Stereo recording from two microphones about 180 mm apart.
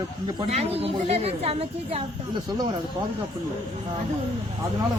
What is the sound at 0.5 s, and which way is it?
A woman's voice, 35° right (ahead or behind).